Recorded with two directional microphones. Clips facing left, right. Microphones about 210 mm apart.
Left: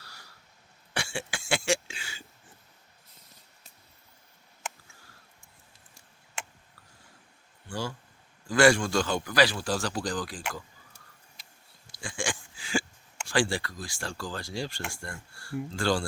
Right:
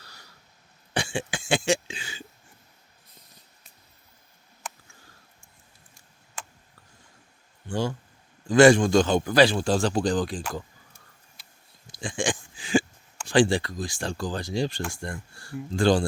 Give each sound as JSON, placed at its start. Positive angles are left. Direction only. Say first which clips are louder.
{"t": 0.0, "sound": "cough", "louder": "right 1 dB", "side_deg": -20}
{"t": 7.7, "sound": "a man's voice", "louder": "right 7 dB", "side_deg": -20}
{"t": 11.9, "sound": "a sound", "louder": "right 6 dB", "side_deg": -20}
{"t": 13.2, "sound": "a man's voice", "louder": "right 7 dB", "side_deg": -20}